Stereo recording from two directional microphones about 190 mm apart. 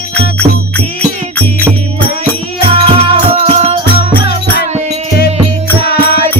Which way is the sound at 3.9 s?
55° left (ahead or behind).